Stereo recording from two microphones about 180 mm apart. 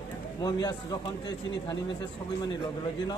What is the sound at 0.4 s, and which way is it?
A man's voice, 20° left (ahead or behind).